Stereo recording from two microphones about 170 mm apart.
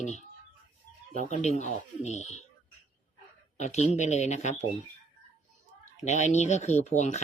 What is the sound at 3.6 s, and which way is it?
Speech, 40° left (ahead or behind).